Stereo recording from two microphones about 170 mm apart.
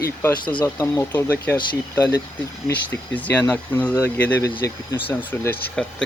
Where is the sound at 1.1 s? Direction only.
10° left (ahead or behind).